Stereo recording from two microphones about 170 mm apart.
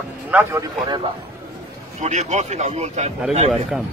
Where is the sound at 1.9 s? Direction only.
40° right (ahead or behind).